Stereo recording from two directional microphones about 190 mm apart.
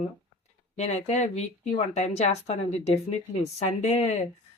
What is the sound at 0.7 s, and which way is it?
Speech, 35° left (ahead or behind).